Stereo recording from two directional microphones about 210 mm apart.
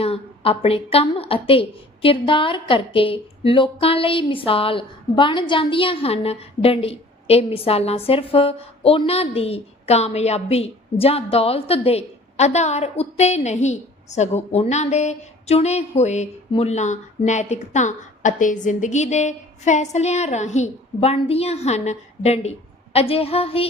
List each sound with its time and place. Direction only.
0.0 s a woman's voice: 25° left (ahead or behind)